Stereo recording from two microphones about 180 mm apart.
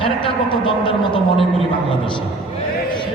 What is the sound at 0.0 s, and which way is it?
A man's voice, 30° left (ahead or behind).